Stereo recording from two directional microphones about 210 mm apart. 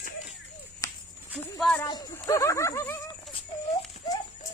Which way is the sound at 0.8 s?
10° left (ahead or behind).